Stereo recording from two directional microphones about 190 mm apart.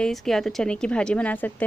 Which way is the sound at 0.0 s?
Centre (ahead or behind).